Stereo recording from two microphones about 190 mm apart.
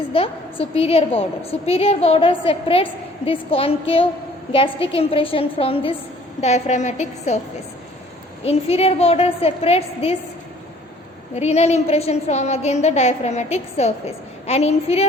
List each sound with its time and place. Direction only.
0.1 s a woman's voice: 30° left (ahead or behind)
8.4 s a woman's voice: 30° left (ahead or behind)
11.3 s a woman's voice: 35° left (ahead or behind)